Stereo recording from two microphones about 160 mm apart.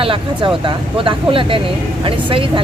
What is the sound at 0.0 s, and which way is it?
Speech, 35° right (ahead or behind).